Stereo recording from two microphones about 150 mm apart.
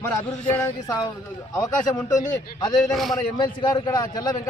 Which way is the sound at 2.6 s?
25° left (ahead or behind).